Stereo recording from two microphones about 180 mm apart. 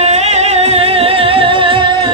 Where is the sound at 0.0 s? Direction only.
35° right (ahead or behind).